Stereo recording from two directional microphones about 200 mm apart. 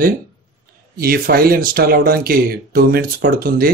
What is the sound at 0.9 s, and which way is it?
Speech, 50° right (ahead or behind).